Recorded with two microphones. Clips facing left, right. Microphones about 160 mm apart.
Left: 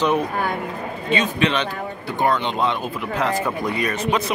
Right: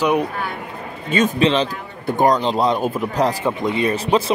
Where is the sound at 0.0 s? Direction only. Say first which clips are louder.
Right 2 dB; 15° right (ahead or behind).